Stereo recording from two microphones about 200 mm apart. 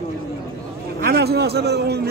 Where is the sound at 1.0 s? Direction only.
55° right (ahead or behind).